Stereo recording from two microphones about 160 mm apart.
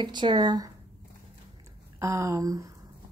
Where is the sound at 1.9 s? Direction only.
20° right (ahead or behind).